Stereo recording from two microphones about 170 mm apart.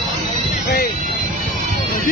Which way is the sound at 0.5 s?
60° left (ahead or behind).